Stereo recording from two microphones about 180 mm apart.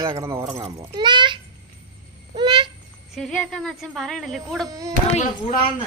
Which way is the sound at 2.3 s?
25° right (ahead or behind).